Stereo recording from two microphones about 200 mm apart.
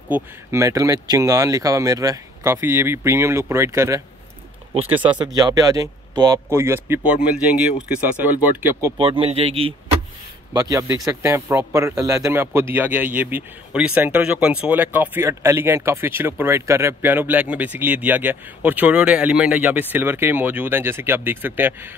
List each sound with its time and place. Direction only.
0.1 s speech: 15° right (ahead or behind)
5.2 s speech: 20° right (ahead or behind)
8.9 s speech: 25° right (ahead or behind)
10.5 s speech: 15° right (ahead or behind)